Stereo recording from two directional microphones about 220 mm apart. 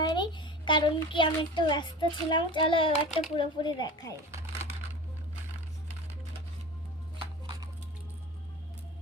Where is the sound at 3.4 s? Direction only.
20° left (ahead or behind).